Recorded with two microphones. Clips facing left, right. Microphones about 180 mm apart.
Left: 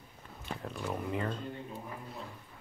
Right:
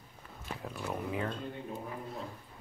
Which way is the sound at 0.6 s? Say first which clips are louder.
Even; 5° right (ahead or behind).